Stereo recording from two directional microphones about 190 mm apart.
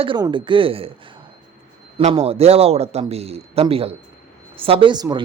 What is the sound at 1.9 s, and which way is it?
A man's voice, 30° right (ahead or behind).